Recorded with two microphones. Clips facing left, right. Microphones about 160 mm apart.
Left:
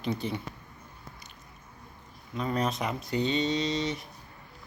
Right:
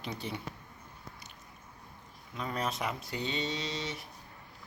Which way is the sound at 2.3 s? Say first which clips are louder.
Left 6 dB; 5° right (ahead or behind).